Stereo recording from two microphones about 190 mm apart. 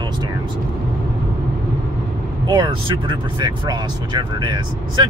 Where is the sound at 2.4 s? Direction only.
20° right (ahead or behind).